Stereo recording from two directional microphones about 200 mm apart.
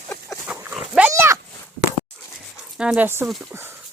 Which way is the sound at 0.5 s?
5° right (ahead or behind).